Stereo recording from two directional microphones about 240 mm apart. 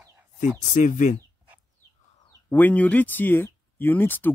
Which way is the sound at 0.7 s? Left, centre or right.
Left.